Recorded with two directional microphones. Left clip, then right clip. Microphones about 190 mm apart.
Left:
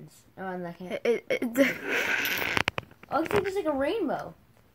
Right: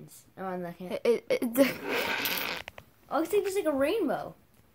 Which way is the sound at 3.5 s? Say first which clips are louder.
Even; 25° right (ahead or behind).